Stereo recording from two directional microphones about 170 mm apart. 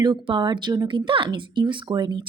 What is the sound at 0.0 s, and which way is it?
Speech, 25° right (ahead or behind).